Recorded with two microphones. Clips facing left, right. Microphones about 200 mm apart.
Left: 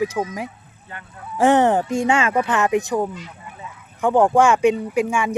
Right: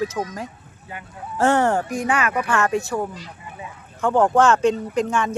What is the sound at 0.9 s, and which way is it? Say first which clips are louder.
Speech: right 2 dB; 10° right (ahead or behind).